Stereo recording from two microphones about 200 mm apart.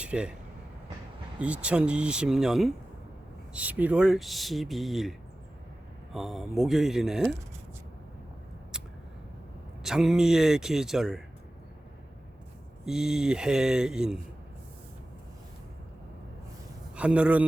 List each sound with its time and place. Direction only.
0.0 s speech: 5° right (ahead or behind)
1.4 s speech: 5° right (ahead or behind)
6.1 s speech: centre (ahead or behind)
9.8 s speech: centre (ahead or behind)
12.8 s speech: centre (ahead or behind)
16.9 s a man's voice: 5° right (ahead or behind)